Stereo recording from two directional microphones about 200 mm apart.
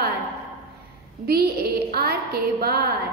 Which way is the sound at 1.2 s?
50° right (ahead or behind).